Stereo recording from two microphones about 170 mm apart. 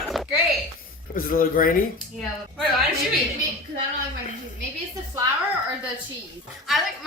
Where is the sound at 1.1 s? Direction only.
55° left (ahead or behind).